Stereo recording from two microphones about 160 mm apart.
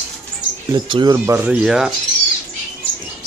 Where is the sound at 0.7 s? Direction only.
25° right (ahead or behind); by 1.9 s 5° right (ahead or behind).